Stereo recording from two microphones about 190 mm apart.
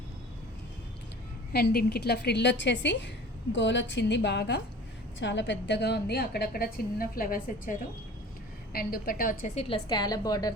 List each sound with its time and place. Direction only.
1.5 s a woman's voice: 55° left (ahead or behind)
5.2 s a woman's voice: 70° left (ahead or behind); by 9.5 s 50° left (ahead or behind)
9.6 s a woman's voice: 30° left (ahead or behind)